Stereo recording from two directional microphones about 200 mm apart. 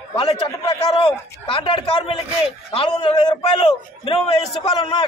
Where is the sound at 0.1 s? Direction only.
20° left (ahead or behind).